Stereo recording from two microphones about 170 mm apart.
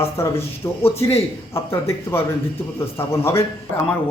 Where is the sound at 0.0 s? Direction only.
15° left (ahead or behind).